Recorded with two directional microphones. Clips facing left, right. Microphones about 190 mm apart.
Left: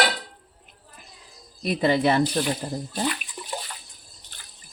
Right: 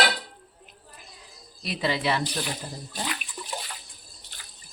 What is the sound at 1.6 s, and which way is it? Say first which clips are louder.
Speech: left 7 dB; 50° left (ahead or behind).